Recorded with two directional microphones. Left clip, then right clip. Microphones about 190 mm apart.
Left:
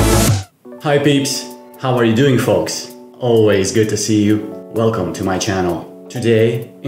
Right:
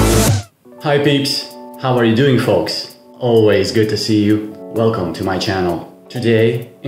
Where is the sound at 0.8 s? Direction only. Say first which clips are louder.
Even; 10° left (ahead or behind).